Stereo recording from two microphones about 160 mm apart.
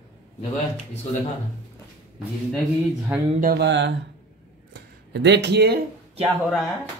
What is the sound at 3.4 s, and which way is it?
Mantra, 80° right.